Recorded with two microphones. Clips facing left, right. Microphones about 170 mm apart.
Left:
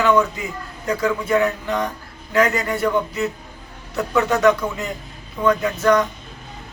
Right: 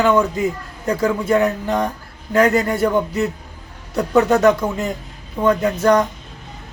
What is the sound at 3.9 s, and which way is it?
Speech, 35° right (ahead or behind).